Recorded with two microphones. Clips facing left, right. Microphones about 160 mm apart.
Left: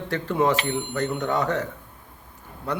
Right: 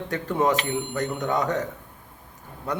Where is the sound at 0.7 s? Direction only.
40° right (ahead or behind).